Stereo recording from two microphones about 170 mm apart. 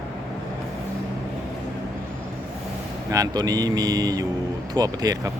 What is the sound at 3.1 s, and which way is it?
Speech, 20° right (ahead or behind).